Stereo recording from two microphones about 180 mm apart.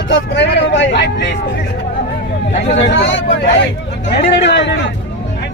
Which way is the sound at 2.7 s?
90° left.